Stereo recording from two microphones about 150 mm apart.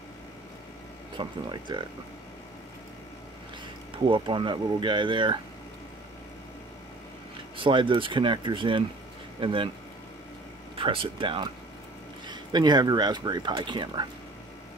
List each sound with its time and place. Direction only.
1.1 s speech: 30° right (ahead or behind)
4.1 s speech: 35° right (ahead or behind)
7.5 s speech: 35° right (ahead or behind)
10.8 s speech: 35° right (ahead or behind)